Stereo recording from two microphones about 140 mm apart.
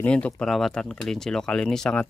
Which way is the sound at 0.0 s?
10° left (ahead or behind).